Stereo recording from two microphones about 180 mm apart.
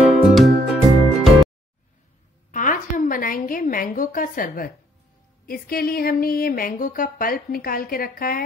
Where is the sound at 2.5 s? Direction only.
45° left (ahead or behind).